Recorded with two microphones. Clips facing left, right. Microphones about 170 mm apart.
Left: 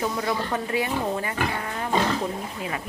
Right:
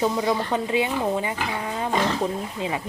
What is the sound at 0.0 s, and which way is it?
Speech, 20° right (ahead or behind).